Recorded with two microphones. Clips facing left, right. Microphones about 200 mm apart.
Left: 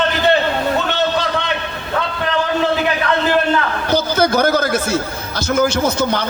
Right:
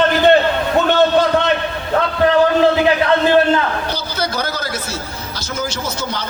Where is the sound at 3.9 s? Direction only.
50° left (ahead or behind).